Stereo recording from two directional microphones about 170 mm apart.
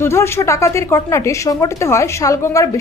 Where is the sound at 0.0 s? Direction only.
15° left (ahead or behind).